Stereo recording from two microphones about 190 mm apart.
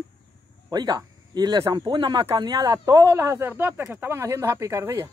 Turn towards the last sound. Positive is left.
turn(degrees=-15)  # may be behind; listen again after turning